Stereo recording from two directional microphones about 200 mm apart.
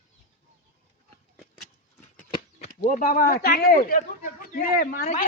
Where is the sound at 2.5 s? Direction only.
40° left (ahead or behind).